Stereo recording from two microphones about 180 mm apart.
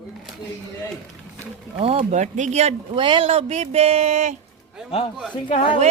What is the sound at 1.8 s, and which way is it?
Speech, 35° right (ahead or behind).